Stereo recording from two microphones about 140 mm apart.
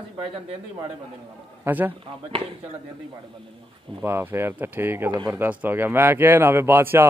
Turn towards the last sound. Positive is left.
turn(degrees=-15)  # may be behind; listen again after turning